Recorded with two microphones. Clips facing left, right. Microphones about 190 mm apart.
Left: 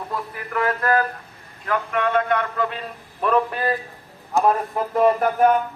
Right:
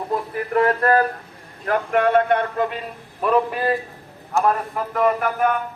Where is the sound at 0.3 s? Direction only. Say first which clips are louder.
Right 6 dB; 30° right (ahead or behind).